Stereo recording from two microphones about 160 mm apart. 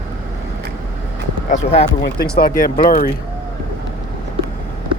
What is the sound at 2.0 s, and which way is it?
Speech, 85° left.